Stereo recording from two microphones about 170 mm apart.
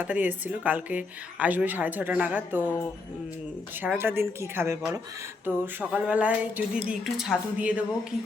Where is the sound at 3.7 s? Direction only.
10° right (ahead or behind).